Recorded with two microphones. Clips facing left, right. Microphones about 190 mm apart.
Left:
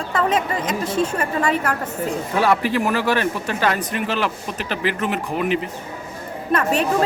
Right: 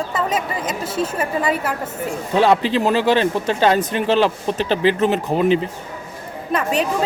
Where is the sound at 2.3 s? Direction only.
20° right (ahead or behind).